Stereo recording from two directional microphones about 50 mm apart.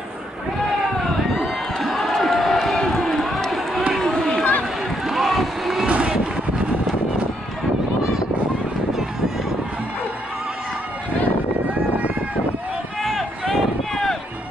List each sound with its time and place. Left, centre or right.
1.3 s run: centre
5.0 s boat: centre
5.9 s boat: right
13.0 s run: centre